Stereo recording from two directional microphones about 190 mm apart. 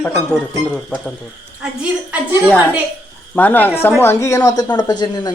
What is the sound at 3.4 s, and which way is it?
A child's voice, 10° left (ahead or behind).